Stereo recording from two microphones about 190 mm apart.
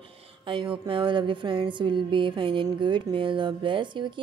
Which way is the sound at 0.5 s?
25° right (ahead or behind).